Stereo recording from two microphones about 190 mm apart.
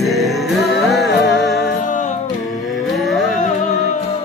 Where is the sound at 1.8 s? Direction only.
40° left (ahead or behind).